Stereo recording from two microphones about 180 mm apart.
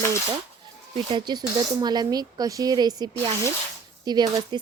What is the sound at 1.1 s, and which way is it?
Speech, 25° right (ahead or behind).